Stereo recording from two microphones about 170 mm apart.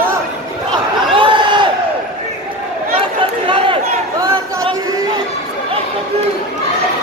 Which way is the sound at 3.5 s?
30° right (ahead or behind).